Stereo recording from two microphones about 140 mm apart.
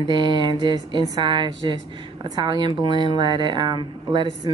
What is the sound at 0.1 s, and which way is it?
Speech, 30° right (ahead or behind).